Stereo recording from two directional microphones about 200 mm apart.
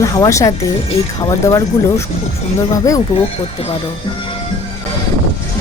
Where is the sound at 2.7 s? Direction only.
15° left (ahead or behind).